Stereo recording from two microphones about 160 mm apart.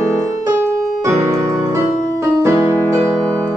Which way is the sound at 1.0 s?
15° right (ahead or behind).